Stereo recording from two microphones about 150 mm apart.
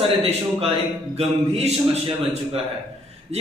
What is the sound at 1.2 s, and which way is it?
Speech, 45° right (ahead or behind).